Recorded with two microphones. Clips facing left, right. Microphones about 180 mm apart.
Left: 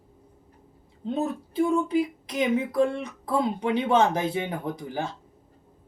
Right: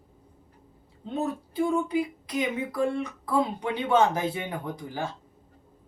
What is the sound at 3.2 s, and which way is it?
Speech, 25° left (ahead or behind).